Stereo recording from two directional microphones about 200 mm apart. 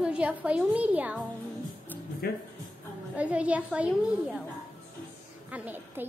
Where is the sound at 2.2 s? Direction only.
50° left (ahead or behind).